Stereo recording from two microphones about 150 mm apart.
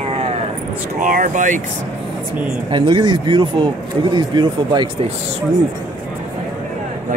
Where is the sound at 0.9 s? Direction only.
60° right (ahead or behind).